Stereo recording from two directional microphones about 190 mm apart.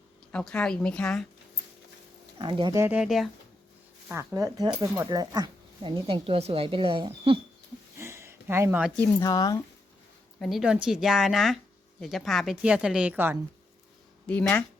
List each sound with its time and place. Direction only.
0.3 s a woman's voice: 5° left (ahead or behind)
2.4 s speech: 25° right (ahead or behind)
2.7 s speech: 10° right (ahead or behind)
4.1 s speech: 15° right (ahead or behind)
7.9 s a sound: 15° right (ahead or behind)
9.0 s speech: 20° left (ahead or behind)
10.4 s a woman's voice: centre (ahead or behind)
14.3 s speech: 10° left (ahead or behind)